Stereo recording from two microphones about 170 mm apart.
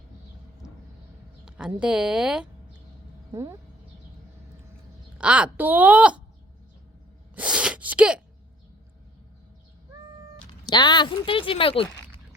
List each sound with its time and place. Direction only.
1.5 s speech: 5° right (ahead or behind)
3.3 s speech: 15° right (ahead or behind)
5.1 s speech: 5° right (ahead or behind)
7.3 s gasp: 5° right (ahead or behind)
10.7 s speech: 25° left (ahead or behind)